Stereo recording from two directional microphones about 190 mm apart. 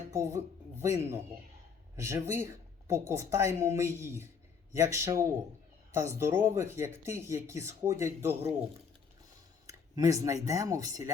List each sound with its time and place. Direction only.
0.1 s speech: 15° right (ahead or behind)
9.9 s speech: 20° right (ahead or behind)